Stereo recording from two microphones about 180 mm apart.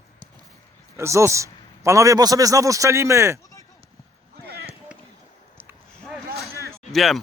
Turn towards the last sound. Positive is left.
turn(degrees=0)  # may be behind; listen again after turning